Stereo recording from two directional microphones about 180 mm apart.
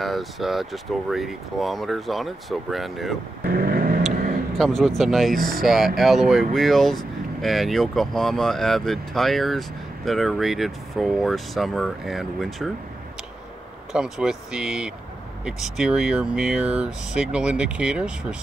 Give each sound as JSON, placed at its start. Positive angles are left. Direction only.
{"t": 0.0, "sound": "speech", "side_deg": 0}
{"t": 3.4, "sound": "vehicle", "side_deg": -55}
{"t": 4.6, "sound": "speech", "side_deg": 0}
{"t": 13.9, "sound": "speech", "side_deg": -5}